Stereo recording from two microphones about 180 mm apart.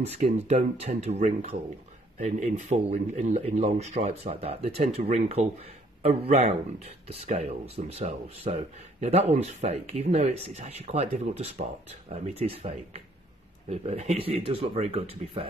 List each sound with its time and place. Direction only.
0.0 s speech: 40° right (ahead or behind)